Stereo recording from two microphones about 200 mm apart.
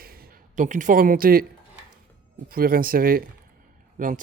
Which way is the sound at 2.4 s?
45° right (ahead or behind).